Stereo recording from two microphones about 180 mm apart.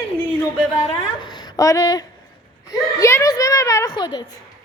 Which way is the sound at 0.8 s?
25° left (ahead or behind).